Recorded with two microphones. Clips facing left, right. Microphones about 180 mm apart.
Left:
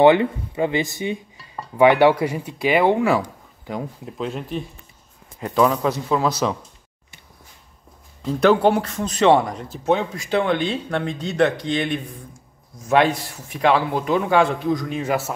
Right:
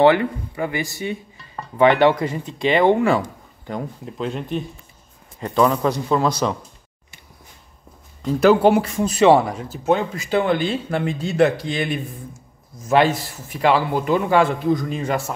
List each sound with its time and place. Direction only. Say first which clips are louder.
0.0 s a man's voice: left 1 dB; 20° left (ahead or behind); by 6.6 s 5° left (ahead or behind)
8.2 s a man's voice: right 2 dB; 5° right (ahead or behind)